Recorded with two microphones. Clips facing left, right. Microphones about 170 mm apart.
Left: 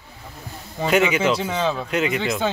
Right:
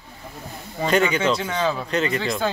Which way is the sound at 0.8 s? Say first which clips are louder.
Left 1 dB; 10° left (ahead or behind).